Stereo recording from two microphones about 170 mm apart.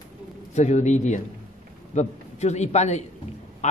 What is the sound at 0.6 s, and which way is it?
A man's voice, 45° left (ahead or behind).